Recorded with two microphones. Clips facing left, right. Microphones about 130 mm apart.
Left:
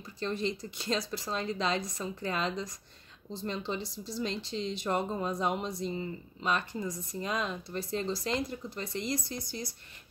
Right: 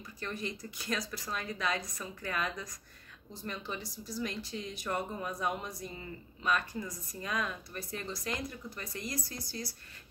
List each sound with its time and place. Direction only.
0.2 s speech: 25° left (ahead or behind)